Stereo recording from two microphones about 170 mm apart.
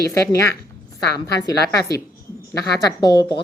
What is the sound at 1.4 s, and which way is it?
Speech, 20° left (ahead or behind).